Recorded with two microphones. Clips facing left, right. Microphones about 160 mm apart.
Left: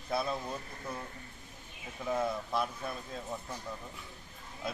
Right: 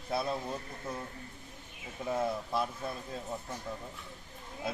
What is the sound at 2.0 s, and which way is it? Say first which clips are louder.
Speech: even; 5° right (ahead or behind).